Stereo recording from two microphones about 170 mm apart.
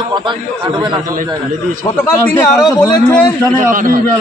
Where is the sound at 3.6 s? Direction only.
50° right (ahead or behind).